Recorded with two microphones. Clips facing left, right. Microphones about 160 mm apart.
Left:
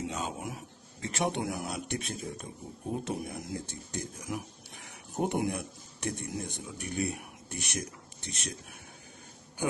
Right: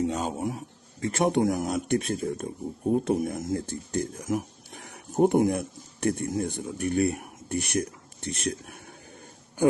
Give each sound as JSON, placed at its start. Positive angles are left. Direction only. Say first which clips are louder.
{"t": 0.0, "sound": "speech", "louder": "right 8 dB", "side_deg": -40}
{"t": 1.0, "sound": "speech", "louder": "right 8 dB", "side_deg": -50}